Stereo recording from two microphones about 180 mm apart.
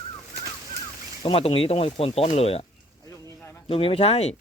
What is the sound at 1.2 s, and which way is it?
Speech, 30° left (ahead or behind).